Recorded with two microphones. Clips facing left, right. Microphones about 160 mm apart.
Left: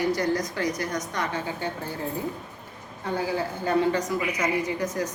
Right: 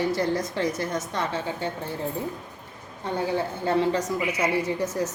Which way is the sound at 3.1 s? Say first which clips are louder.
Right 1 dB; 25° right (ahead or behind).